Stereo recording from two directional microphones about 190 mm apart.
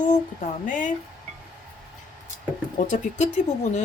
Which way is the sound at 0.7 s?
40° left (ahead or behind).